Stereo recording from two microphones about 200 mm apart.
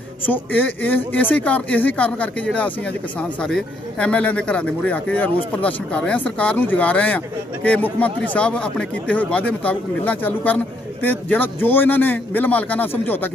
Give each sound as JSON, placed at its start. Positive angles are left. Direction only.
{"t": 0.3, "sound": "speech", "side_deg": 10}